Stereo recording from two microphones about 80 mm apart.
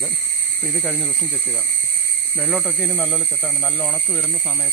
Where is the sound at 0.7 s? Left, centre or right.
Centre.